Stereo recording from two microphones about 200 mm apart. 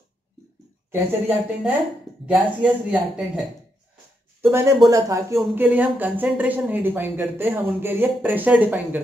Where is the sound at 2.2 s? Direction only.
5° right (ahead or behind).